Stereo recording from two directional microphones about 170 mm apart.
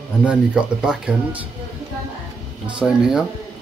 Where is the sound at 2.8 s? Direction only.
5° right (ahead or behind).